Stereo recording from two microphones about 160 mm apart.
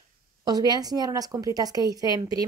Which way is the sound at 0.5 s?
25° right (ahead or behind).